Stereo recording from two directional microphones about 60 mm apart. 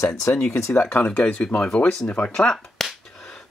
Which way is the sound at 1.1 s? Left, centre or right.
Left.